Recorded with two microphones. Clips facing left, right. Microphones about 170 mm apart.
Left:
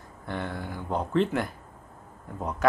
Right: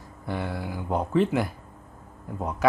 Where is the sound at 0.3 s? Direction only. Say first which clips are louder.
Right 2 dB; 5° right (ahead or behind).